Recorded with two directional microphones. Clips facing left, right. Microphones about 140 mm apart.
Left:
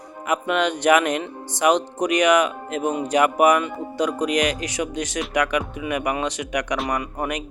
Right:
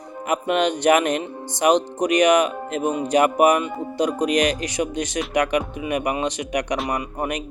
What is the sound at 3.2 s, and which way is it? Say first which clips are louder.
Speech: even; 35° right (ahead or behind).